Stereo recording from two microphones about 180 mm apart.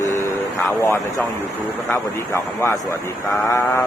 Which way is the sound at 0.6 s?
15° left (ahead or behind).